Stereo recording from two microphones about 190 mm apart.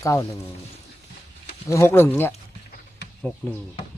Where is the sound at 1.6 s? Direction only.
15° left (ahead or behind).